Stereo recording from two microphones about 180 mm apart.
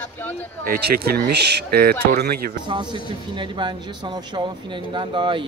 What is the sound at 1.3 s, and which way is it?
Speech, 65° right (ahead or behind).